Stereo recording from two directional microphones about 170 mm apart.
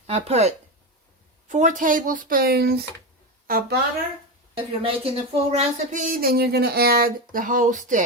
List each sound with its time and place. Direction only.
0.1 s a woman's voice: 40° right (ahead or behind); by 3.8 s 60° right (ahead or behind)
4.5 s speech: 30° right (ahead or behind); by 8.0 s 50° right (ahead or behind)